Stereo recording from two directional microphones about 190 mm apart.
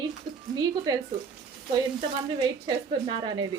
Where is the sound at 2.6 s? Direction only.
25° right (ahead or behind).